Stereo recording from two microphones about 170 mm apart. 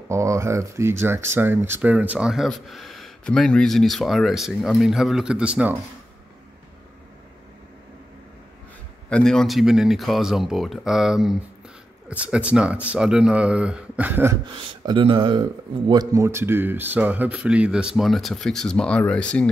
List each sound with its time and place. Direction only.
0.1 s speech: 15° right (ahead or behind)
9.1 s speech: 5° left (ahead or behind)
14.4 s speech: 30° right (ahead or behind); by 19.5 s 5° left (ahead or behind)